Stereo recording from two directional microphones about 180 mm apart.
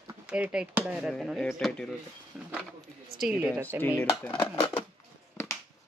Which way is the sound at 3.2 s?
5° right (ahead or behind).